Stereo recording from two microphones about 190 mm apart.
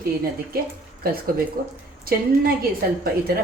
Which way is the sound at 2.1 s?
50° right (ahead or behind).